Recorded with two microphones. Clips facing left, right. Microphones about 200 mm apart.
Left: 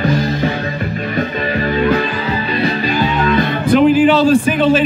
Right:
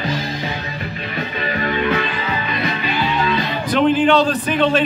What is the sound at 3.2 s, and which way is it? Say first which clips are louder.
Music: left 6 dB; 50° left (ahead or behind).